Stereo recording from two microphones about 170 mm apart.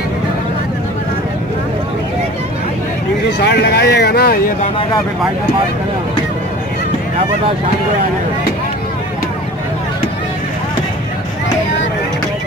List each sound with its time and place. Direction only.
3.3 s speech: 80° left; by 4.6 s 55° left (ahead or behind)